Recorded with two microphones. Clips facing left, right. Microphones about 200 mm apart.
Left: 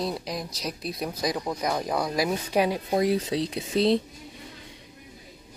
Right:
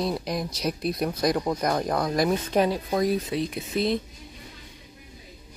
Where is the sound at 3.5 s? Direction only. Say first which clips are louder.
Left 3 dB; 30° left (ahead or behind).